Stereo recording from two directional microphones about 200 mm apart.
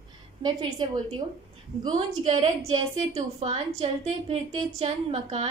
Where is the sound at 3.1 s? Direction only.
30° right (ahead or behind).